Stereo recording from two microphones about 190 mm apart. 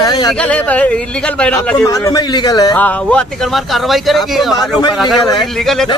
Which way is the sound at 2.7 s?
5° left (ahead or behind).